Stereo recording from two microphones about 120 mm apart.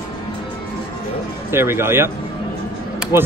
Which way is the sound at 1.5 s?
20° right (ahead or behind).